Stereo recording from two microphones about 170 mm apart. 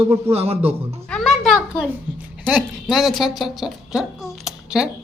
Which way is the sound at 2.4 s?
Centre (ahead or behind).